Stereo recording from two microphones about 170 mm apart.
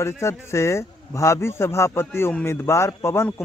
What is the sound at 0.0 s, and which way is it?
A man's voice, 15° left (ahead or behind).